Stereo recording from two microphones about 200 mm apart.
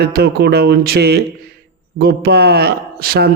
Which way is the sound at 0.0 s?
50° right (ahead or behind).